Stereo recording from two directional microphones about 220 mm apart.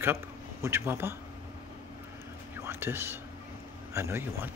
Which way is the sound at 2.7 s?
10° right (ahead or behind).